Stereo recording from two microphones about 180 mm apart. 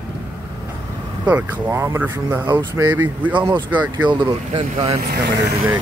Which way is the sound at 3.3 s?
25° right (ahead or behind).